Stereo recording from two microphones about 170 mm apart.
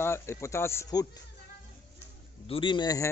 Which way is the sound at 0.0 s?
15° left (ahead or behind).